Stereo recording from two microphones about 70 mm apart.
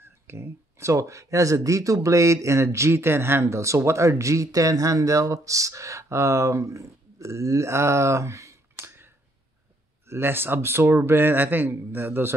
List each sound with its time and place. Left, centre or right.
0.0 s speech: right